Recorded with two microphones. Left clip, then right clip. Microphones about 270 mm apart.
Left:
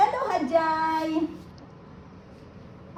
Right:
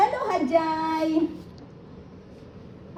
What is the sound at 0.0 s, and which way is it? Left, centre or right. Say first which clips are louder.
Child singing: even; centre.